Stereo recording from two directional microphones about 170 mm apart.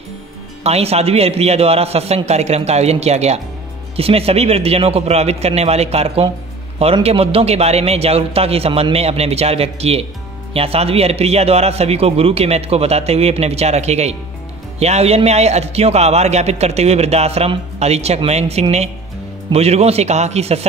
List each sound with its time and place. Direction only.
0.7 s a man's voice: 40° right (ahead or behind)